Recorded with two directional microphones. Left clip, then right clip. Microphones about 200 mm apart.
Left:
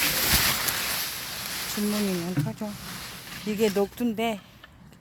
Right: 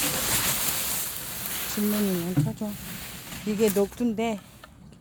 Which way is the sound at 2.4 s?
10° right (ahead or behind).